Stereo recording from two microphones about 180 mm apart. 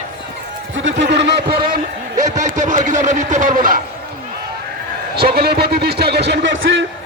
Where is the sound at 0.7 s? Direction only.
90° right; by 3.8 s 50° right (ahead or behind).